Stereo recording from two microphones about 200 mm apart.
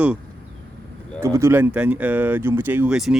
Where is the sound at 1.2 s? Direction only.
15° right (ahead or behind).